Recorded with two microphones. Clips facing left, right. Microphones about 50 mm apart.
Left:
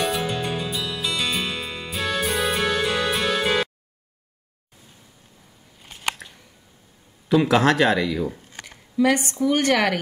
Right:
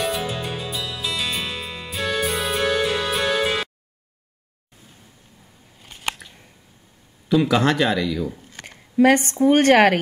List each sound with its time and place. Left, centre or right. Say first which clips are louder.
0.0 s music: left 1 dB; centre
5.8 s scissors: left 1 dB; centre
7.4 s speech: left 3 dB; centre
8.0 s speech: even; centre
8.6 s speech: right 4 dB; right